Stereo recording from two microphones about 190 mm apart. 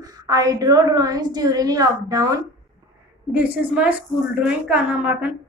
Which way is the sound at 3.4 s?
5° right (ahead or behind).